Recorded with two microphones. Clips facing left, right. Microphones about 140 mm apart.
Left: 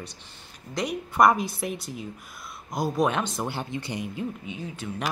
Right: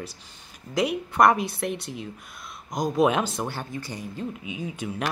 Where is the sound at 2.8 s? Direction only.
10° right (ahead or behind).